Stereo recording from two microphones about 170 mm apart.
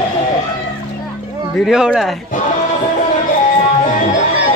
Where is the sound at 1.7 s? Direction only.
5° right (ahead or behind).